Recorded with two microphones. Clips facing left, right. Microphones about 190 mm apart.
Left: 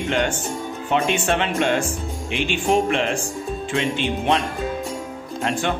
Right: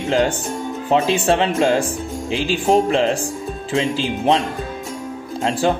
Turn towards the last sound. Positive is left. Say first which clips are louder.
# right 5 dB
turn(degrees=-35)  # may be behind; listen again after turning